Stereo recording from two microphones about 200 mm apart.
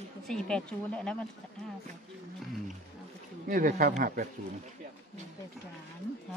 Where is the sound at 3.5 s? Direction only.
45° right (ahead or behind).